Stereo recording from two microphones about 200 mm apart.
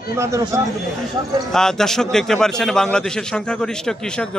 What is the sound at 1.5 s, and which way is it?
A man's voice, 5° left (ahead or behind).